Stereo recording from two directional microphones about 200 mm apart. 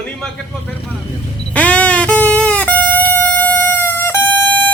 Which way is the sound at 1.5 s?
5° left (ahead or behind).